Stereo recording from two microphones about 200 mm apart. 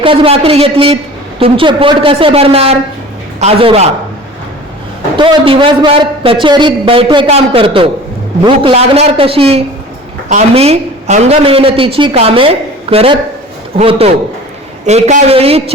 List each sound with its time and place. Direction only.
0.0 s a man's voice: 25° right (ahead or behind)
5.1 s a man's voice: 25° right (ahead or behind)